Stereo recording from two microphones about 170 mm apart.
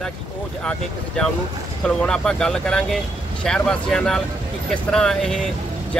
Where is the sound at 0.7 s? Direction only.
5° left (ahead or behind).